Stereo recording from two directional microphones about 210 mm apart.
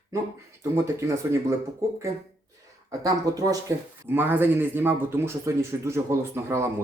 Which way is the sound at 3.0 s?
15° right (ahead or behind).